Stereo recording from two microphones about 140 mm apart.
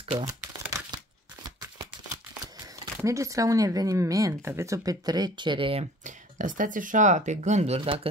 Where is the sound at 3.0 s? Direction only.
20° right (ahead or behind); by 5.8 s 40° right (ahead or behind).